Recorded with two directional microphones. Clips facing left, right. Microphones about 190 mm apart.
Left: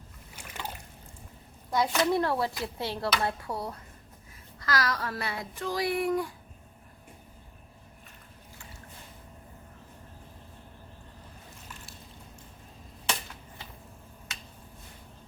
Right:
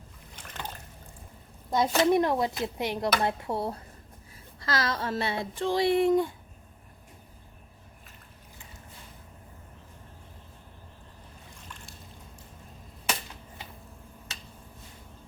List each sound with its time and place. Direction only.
0.3 s water: 10° left (ahead or behind)
1.7 s speech: 25° right (ahead or behind)